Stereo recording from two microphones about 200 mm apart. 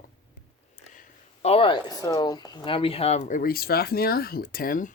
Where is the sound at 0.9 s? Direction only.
35° left (ahead or behind).